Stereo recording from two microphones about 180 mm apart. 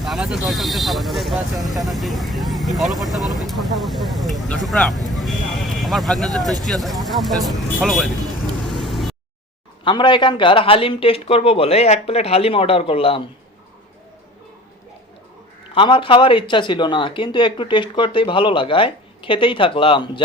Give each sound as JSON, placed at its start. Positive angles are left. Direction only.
{"t": 0.0, "sound": "speech", "side_deg": -5}
{"t": 8.6, "sound": "vehicle", "side_deg": 0}
{"t": 9.8, "sound": "a man's voice", "side_deg": 25}
{"t": 15.7, "sound": "speech", "side_deg": 30}